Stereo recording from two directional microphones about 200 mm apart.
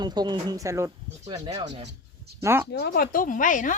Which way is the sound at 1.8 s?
55° right (ahead or behind).